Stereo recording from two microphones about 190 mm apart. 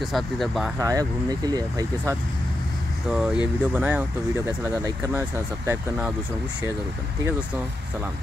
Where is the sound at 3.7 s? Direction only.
10° right (ahead or behind).